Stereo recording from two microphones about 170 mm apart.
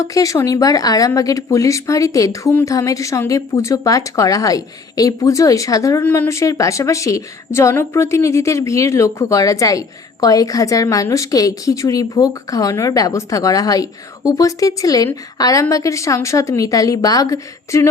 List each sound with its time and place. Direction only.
0.0 s speech: 20° left (ahead or behind)